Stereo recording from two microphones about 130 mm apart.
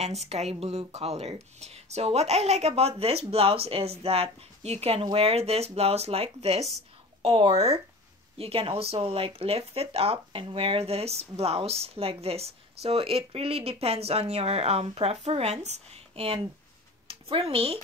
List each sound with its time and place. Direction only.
0.0 s speech: 55° right (ahead or behind)